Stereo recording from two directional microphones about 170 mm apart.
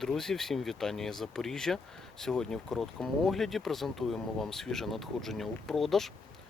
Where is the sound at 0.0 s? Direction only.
5° left (ahead or behind).